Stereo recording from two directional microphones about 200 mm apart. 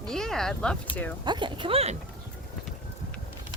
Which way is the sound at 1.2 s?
20° right (ahead or behind).